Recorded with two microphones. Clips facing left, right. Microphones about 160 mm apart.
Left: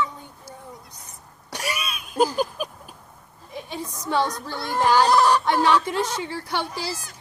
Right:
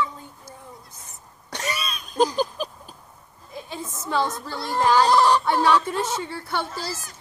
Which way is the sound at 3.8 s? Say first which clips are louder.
Left 1 dB; 5° right (ahead or behind).